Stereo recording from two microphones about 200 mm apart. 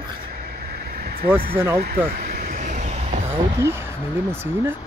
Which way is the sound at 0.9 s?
45° right (ahead or behind).